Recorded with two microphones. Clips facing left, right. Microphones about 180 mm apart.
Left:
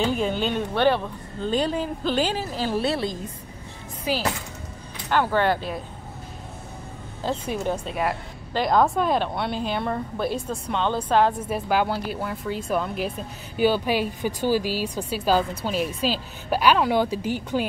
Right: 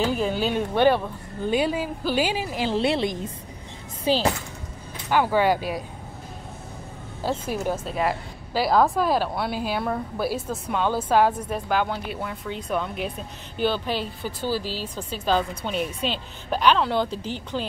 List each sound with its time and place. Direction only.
0.0 s speech: 5° right (ahead or behind); by 4.3 s 30° right (ahead or behind)
5.1 s speech: 10° right (ahead or behind)
7.2 s a woman's voice: 5° right (ahead or behind)
11.4 s a woman's voice: 5° left (ahead or behind)